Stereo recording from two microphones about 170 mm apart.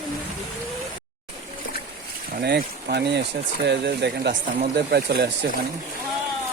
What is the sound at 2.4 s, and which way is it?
Speech, 70° right (ahead or behind).